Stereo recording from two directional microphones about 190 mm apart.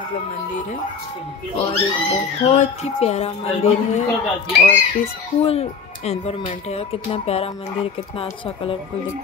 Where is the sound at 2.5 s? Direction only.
35° left (ahead or behind).